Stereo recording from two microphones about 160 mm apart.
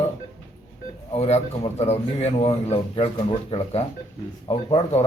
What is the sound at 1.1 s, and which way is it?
A man's voice, 40° left (ahead or behind).